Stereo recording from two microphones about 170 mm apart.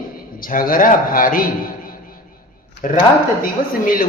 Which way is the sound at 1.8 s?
55° left (ahead or behind).